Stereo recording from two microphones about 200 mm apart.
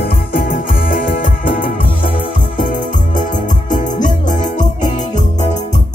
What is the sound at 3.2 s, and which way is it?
Music, 40° left (ahead or behind).